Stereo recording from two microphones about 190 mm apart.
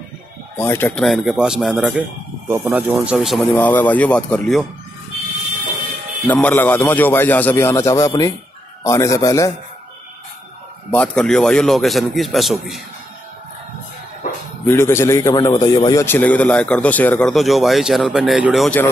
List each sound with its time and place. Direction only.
0.6 s a man's voice: 10° left (ahead or behind)
6.2 s a man's voice: 10° left (ahead or behind)
10.9 s a man's voice: 5° left (ahead or behind)
14.7 s a man's voice: 15° left (ahead or behind)